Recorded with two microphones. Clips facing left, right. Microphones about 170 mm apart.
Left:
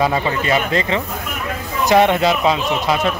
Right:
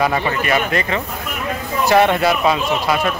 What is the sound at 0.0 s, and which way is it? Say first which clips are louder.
Speech: even; 20° left (ahead or behind).